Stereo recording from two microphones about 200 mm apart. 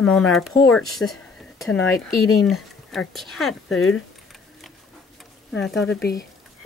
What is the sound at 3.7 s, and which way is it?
Speech, 85° left.